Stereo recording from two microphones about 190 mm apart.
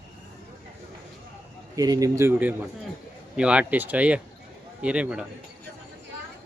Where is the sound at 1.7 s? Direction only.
20° right (ahead or behind).